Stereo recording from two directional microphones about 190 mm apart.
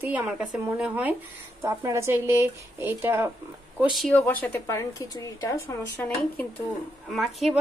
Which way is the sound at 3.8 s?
Centre (ahead or behind).